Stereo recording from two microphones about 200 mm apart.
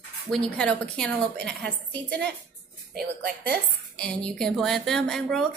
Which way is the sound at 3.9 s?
5° left (ahead or behind).